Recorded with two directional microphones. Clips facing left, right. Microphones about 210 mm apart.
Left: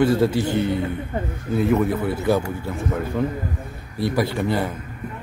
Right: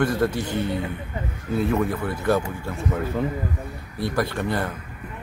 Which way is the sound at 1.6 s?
5° left (ahead or behind).